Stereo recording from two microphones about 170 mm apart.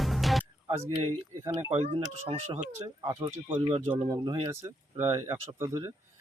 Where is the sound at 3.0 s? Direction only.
30° right (ahead or behind).